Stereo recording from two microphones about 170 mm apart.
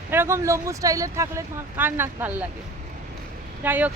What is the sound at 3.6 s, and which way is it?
Speech, 10° right (ahead or behind).